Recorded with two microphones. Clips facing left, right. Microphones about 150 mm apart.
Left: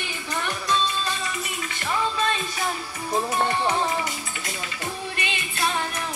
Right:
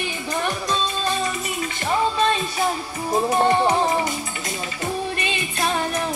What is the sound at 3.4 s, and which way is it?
Music, 30° right (ahead or behind).